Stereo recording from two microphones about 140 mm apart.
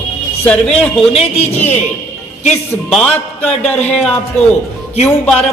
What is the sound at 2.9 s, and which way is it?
Speech, 5° left (ahead or behind).